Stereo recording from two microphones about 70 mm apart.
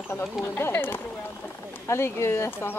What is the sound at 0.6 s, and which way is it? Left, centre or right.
Speech, left.